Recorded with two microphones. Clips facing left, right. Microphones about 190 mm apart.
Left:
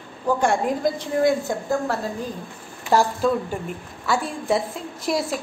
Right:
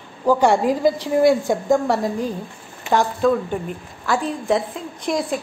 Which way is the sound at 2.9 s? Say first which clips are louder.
Right 2 dB; 5° left (ahead or behind).